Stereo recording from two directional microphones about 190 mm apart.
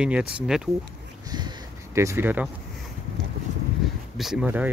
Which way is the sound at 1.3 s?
20° right (ahead or behind).